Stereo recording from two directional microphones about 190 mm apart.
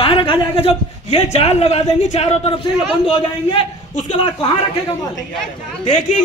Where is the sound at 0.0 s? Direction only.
25° left (ahead or behind).